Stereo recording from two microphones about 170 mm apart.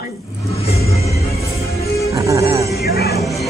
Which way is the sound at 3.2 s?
Centre (ahead or behind).